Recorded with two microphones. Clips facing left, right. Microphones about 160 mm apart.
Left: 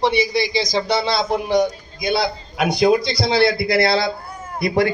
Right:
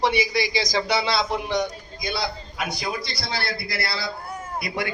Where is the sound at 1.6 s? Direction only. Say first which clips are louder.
Left 7 dB; 60° left (ahead or behind); by 4.1 s 90° left.